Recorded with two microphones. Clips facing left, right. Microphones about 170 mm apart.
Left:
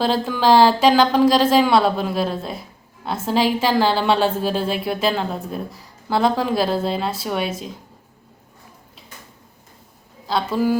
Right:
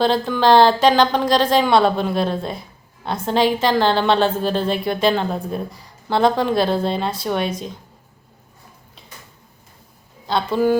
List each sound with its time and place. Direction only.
0.0 s speech: 5° left (ahead or behind)
10.2 s speech: centre (ahead or behind)